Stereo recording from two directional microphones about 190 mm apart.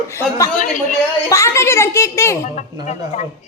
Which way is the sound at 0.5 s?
45° left (ahead or behind).